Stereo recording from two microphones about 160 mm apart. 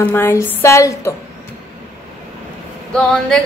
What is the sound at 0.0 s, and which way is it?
A woman's voice, 15° left (ahead or behind).